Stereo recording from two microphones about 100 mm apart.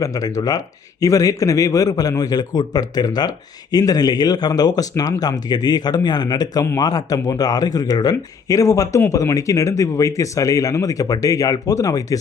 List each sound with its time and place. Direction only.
0.0 s a man's voice: 35° left (ahead or behind)